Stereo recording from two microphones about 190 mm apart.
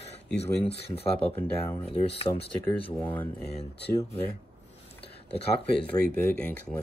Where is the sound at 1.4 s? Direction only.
10° left (ahead or behind).